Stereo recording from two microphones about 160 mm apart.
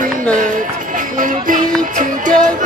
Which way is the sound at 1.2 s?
55° right (ahead or behind).